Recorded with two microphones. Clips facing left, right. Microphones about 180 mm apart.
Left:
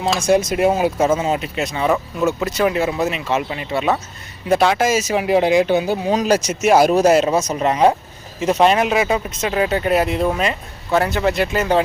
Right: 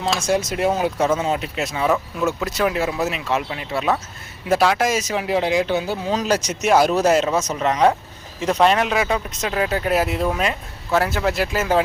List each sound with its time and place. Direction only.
0.2 s speech: 15° left (ahead or behind)
7.6 s speech: 30° left (ahead or behind)
8.4 s speech: 5° left (ahead or behind)